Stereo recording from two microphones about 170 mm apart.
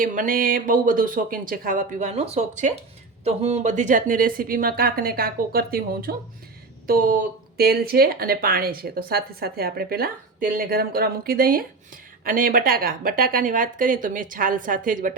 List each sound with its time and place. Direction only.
0.0 s speech: 50° right (ahead or behind)